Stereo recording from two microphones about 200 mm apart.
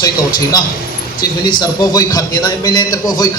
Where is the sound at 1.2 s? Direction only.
20° left (ahead or behind).